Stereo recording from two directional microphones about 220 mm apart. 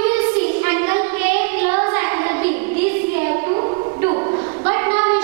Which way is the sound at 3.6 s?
25° right (ahead or behind).